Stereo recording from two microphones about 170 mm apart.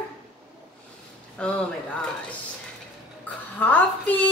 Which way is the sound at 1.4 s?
5° left (ahead or behind).